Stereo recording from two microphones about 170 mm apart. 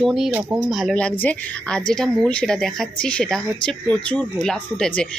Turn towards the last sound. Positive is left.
turn(degrees=5)  # may be behind; listen again after turning